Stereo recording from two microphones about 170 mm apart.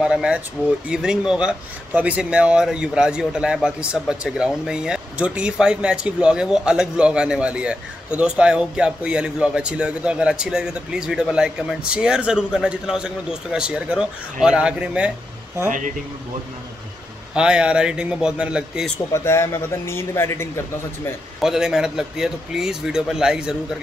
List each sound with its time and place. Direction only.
0.0 s a man's voice: 5° right (ahead or behind)
17.3 s a man's voice: 5° right (ahead or behind)
19.1 s speech: 15° left (ahead or behind)
21.4 s a man's voice: 5° right (ahead or behind)